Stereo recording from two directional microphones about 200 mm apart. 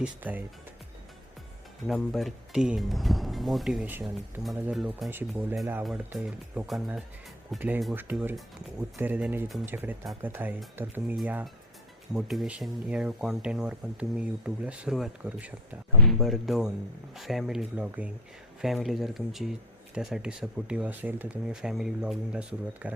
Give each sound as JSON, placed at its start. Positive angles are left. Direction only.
{"t": 0.0, "sound": "speech", "side_deg": -10}
{"t": 1.9, "sound": "speech", "side_deg": 0}